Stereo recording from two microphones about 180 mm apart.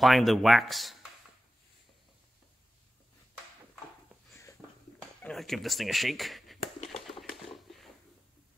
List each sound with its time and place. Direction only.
0.0 s speech: centre (ahead or behind)
4.3 s a sound: 15° left (ahead or behind)
5.2 s speech: centre (ahead or behind)
6.9 s typewriter: centre (ahead or behind)